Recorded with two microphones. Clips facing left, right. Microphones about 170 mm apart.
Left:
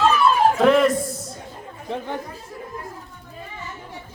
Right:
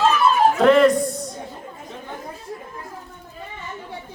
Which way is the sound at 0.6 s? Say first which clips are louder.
Right 4 dB; centre (ahead or behind).